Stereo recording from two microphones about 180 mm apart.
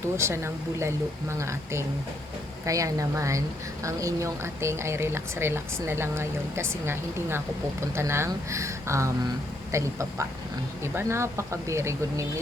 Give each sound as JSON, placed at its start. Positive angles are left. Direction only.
{"t": 0.0, "sound": "speech", "side_deg": -15}